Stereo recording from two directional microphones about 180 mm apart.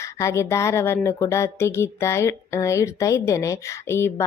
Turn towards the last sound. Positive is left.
turn(degrees=15)  # may be behind; listen again after turning